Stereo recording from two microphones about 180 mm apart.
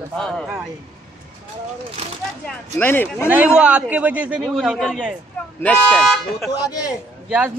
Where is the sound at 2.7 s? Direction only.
10° left (ahead or behind).